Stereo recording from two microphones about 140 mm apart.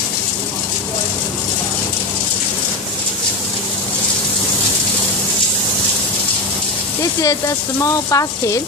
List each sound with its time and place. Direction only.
7.2 s speech: 25° left (ahead or behind)